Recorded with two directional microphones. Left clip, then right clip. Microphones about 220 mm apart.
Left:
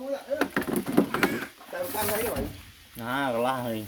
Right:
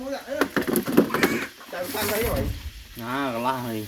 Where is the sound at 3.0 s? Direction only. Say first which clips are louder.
Even; 30° left (ahead or behind).